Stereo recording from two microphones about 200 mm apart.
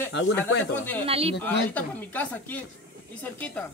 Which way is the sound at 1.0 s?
30° right (ahead or behind).